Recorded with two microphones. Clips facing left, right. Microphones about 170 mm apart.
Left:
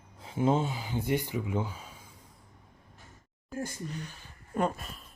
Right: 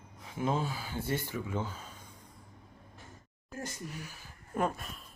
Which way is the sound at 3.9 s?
5° right (ahead or behind).